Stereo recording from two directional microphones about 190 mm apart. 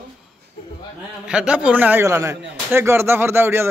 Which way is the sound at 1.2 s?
5° right (ahead or behind).